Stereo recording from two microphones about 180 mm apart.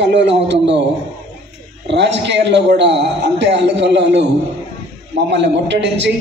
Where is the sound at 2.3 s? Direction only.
75° right (ahead or behind).